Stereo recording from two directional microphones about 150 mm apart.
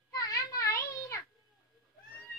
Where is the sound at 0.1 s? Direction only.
25° left (ahead or behind).